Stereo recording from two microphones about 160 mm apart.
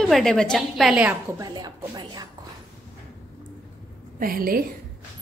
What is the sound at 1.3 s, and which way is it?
Speech, 25° right (ahead or behind).